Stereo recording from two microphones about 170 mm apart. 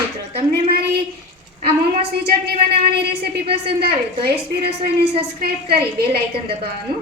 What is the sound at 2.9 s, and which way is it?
A woman's voice, 70° right (ahead or behind).